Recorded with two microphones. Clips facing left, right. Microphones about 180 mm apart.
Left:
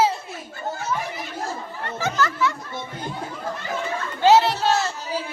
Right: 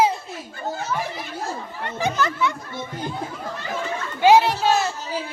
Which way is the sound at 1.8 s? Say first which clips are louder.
Right 1 dB; 15° right (ahead or behind).